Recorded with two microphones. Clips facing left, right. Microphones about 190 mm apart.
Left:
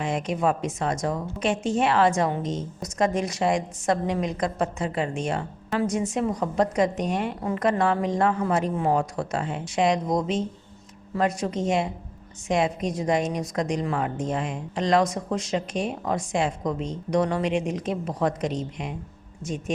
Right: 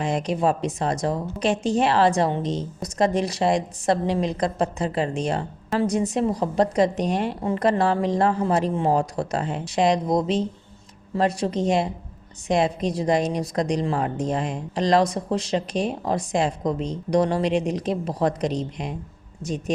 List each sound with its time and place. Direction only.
0.0 s a woman's voice: 35° right (ahead or behind)